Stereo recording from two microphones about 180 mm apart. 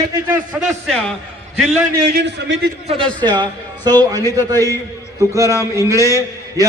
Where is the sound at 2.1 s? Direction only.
75° right (ahead or behind).